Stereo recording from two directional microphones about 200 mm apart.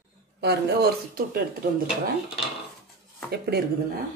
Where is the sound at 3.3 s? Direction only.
55° right (ahead or behind).